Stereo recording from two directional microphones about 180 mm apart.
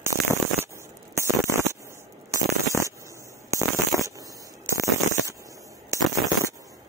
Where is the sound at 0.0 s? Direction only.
15° right (ahead or behind).